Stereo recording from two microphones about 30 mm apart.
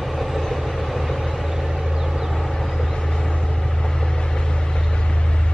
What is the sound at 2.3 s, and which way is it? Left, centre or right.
Vehicle, centre.